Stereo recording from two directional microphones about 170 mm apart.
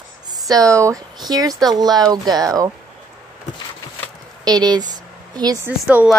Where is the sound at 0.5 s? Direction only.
20° right (ahead or behind).